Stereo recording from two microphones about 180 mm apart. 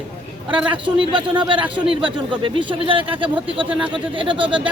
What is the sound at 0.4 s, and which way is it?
Speech, 25° right (ahead or behind).